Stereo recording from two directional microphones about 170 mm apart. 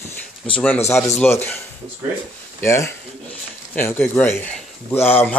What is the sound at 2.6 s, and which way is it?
Speech, 15° left (ahead or behind).